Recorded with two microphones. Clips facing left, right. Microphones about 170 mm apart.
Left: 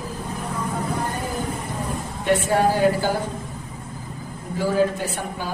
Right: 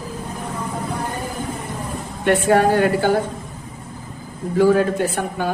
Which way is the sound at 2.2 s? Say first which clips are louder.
Right 4 dB; 65° right (ahead or behind).